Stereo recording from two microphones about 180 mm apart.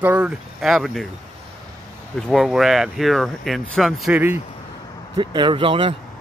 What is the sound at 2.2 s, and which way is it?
Speech, centre (ahead or behind).